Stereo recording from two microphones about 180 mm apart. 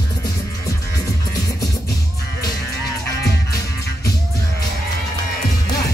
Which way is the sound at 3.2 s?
15° left (ahead or behind).